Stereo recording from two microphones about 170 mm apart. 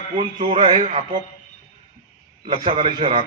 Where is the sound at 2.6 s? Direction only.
30° right (ahead or behind).